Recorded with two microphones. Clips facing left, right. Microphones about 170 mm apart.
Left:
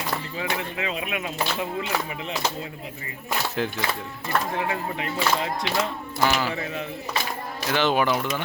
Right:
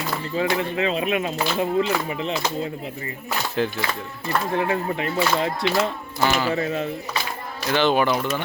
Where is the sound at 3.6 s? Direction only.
10° left (ahead or behind).